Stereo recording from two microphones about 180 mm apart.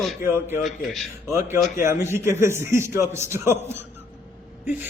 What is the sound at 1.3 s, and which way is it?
A man's voice, 15° right (ahead or behind).